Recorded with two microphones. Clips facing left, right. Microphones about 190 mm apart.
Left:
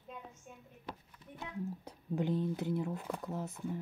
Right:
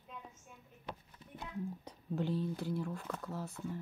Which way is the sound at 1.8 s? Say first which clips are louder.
Left 2 dB; 15° left (ahead or behind).